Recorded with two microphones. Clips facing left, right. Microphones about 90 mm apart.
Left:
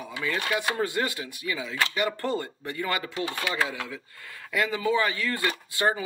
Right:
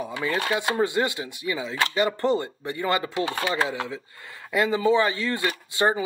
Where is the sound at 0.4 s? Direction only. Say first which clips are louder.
Right 4 dB; 30° right (ahead or behind).